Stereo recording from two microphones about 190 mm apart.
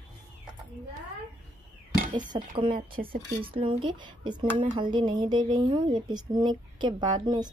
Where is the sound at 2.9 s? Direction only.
50° right (ahead or behind).